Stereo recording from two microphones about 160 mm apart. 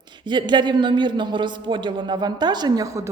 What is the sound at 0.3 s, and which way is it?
Speech, 30° right (ahead or behind).